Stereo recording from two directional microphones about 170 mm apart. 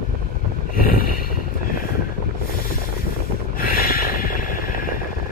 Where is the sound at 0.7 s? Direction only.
55° left (ahead or behind).